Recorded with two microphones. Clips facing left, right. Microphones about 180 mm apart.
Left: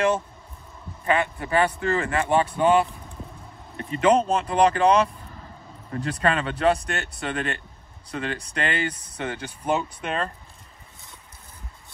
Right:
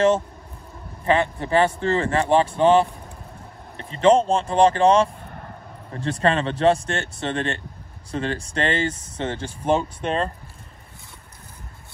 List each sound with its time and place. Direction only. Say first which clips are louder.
1.0 s speech: right 3 dB; 30° right (ahead or behind)
5.2 s vehicle: right 4 dB; 60° right (ahead or behind)
5.9 s speech: right 3 dB; 25° right (ahead or behind)